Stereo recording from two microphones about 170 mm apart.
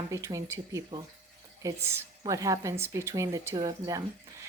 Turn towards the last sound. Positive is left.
turn(degrees=-25)  # may be behind; listen again after turning